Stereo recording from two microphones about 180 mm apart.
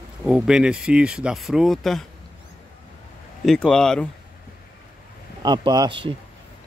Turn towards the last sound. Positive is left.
turn(degrees=-25)  # may be behind; listen again after turning